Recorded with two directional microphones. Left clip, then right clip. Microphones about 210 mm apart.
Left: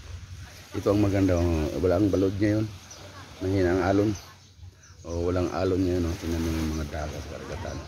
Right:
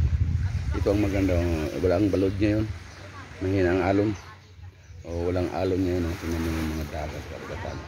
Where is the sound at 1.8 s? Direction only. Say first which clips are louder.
Even; 5° left (ahead or behind).